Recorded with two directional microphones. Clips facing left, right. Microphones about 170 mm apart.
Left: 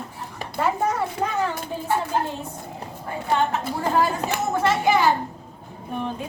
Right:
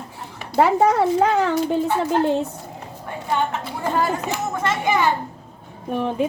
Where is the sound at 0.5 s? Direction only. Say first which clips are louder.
Right 7 dB; 70° right (ahead or behind).